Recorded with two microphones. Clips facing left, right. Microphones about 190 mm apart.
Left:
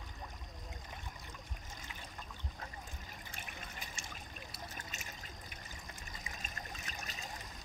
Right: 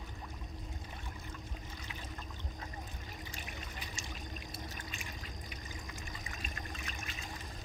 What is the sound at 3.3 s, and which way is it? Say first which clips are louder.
Water: right 3 dB; 55° left (ahead or behind).